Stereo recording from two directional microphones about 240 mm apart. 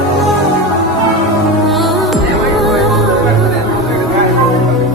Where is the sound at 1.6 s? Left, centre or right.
Centre.